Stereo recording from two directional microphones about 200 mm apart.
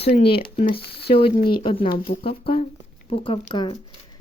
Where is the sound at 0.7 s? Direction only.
55° left (ahead or behind).